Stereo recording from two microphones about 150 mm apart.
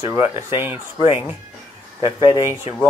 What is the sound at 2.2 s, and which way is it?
Speech, 35° left (ahead or behind).